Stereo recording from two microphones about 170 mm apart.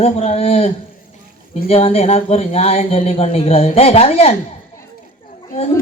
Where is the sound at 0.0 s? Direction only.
35° left (ahead or behind).